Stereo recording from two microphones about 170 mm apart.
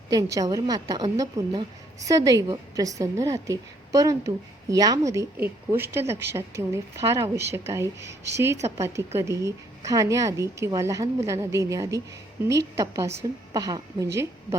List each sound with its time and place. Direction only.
0.1 s a woman's voice: 20° right (ahead or behind)